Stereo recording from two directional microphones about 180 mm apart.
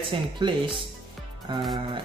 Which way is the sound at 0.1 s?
30° right (ahead or behind).